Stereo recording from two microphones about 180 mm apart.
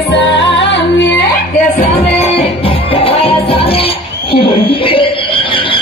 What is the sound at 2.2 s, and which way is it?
Music, 30° left (ahead or behind).